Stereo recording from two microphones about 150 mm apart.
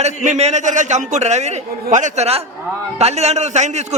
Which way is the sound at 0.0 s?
50° right (ahead or behind).